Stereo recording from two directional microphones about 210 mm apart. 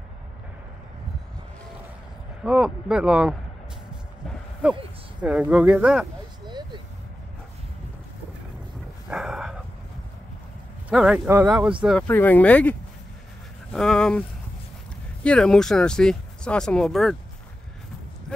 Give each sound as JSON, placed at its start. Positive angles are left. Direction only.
{"t": 2.4, "sound": "speech", "side_deg": -5}
{"t": 4.6, "sound": "speech", "side_deg": -5}
{"t": 6.4, "sound": "vehicle", "side_deg": -20}
{"t": 9.1, "sound": "dog", "side_deg": -5}
{"t": 10.9, "sound": "speech", "side_deg": -5}
{"t": 13.7, "sound": "speech", "side_deg": 5}
{"t": 15.2, "sound": "speech", "side_deg": 5}